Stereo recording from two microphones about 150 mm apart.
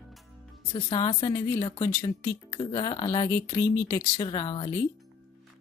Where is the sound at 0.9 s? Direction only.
30° left (ahead or behind).